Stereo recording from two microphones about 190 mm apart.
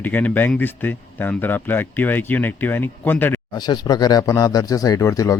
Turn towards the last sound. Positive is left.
turn(degrees=15)  # may be behind; listen again after turning